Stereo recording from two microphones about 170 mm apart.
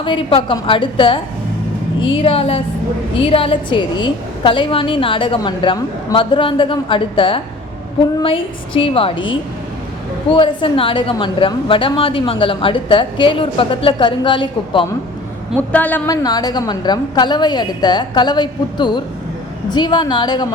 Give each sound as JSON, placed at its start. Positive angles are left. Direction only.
{"t": 0.0, "sound": "a woman's voice", "side_deg": 30}
{"t": 15.7, "sound": "a woman's voice", "side_deg": 10}
{"t": 16.0, "sound": "a woman's voice", "side_deg": 25}